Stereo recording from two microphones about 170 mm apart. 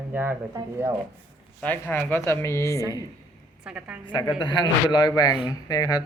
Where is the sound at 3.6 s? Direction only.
5° right (ahead or behind).